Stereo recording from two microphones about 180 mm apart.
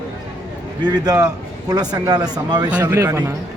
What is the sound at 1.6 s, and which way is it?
Speech, 20° right (ahead or behind).